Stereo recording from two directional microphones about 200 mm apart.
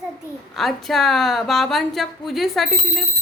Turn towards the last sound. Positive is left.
turn(degrees=0)  # may be behind; listen again after turning